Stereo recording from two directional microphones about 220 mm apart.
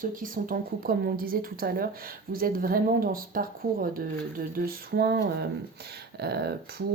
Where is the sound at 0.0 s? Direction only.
40° right (ahead or behind).